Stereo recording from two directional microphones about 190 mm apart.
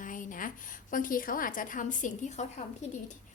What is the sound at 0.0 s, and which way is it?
A woman's voice, 45° left (ahead or behind).